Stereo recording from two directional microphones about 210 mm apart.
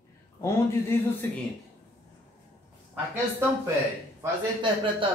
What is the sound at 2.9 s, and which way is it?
Speech, 10° right (ahead or behind).